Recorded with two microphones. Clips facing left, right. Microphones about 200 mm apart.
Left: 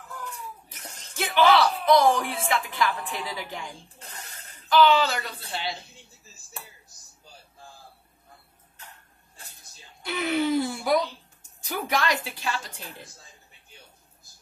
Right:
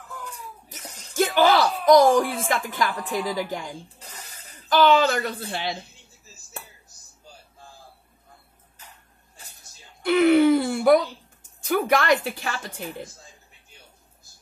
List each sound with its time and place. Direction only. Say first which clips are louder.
1.1 s speech: right 2 dB; 45° right (ahead or behind)
4.0 s a sound: even; centre (ahead or behind)
4.6 s a woman's voice: right 2 dB; 45° right (ahead or behind)
10.0 s speech: right 10 dB; 60° right (ahead or behind)